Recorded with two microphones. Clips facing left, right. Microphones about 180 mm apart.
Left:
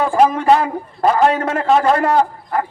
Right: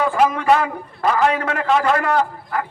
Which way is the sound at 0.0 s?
30° left (ahead or behind).